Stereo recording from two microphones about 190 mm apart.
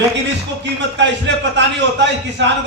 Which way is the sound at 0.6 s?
70° right (ahead or behind).